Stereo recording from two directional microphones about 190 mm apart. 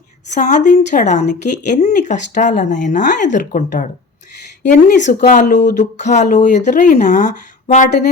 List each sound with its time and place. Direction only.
0.3 s speech: 40° left (ahead or behind)
5.0 s speech: 40° left (ahead or behind)